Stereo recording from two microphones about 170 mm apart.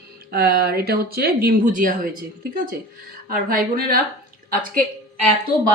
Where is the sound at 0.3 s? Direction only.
65° right (ahead or behind).